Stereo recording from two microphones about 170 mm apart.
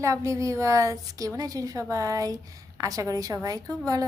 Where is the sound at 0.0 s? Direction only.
20° right (ahead or behind).